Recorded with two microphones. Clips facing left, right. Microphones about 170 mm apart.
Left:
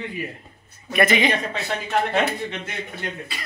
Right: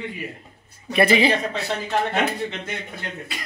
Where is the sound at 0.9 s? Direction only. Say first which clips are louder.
Right 2 dB; 30° right (ahead or behind).